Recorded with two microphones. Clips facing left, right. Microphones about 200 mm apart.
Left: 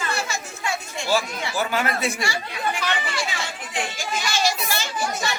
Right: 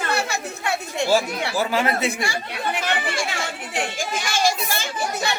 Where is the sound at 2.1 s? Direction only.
55° right (ahead or behind).